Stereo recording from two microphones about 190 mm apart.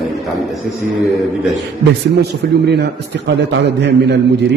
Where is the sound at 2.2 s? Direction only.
60° right (ahead or behind).